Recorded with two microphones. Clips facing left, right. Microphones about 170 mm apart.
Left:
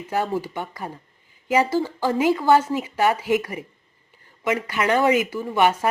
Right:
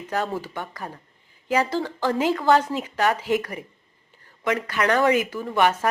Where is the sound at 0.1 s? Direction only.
10° left (ahead or behind).